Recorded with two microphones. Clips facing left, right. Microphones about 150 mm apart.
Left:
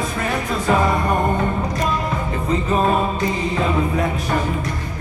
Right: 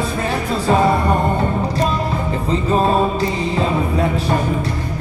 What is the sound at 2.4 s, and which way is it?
Music, 30° right (ahead or behind).